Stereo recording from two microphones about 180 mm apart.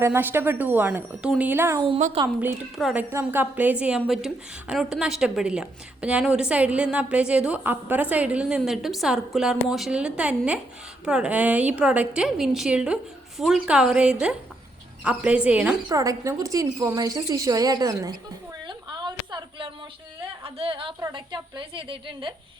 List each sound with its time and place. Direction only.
0.0 s a woman's voice: 10° right (ahead or behind)
15.9 s speech: 20° right (ahead or behind)
18.7 s a sound: 25° right (ahead or behind)
20.4 s a woman's voice: 30° right (ahead or behind)